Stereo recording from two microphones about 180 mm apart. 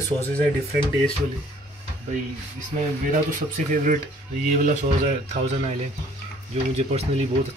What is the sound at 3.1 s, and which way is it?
Speech, 45° right (ahead or behind).